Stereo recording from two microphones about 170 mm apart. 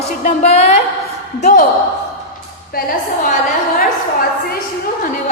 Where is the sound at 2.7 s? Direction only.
60° left (ahead or behind).